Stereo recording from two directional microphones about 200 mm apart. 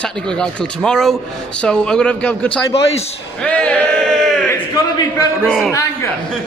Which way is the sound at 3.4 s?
5° left (ahead or behind).